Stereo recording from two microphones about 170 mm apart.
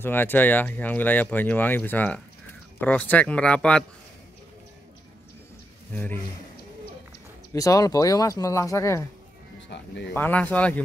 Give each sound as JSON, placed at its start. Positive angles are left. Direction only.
{"t": 0.0, "sound": "speech", "side_deg": 10}
{"t": 7.5, "sound": "speech", "side_deg": 20}
{"t": 9.6, "sound": "speech", "side_deg": 90}
{"t": 10.1, "sound": "speech", "side_deg": 10}